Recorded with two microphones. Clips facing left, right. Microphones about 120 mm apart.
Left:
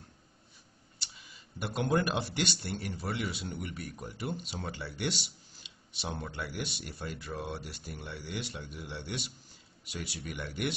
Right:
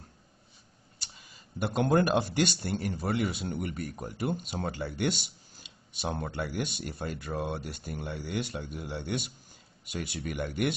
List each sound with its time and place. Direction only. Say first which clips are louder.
0.9 s speech: even; 45° right (ahead or behind)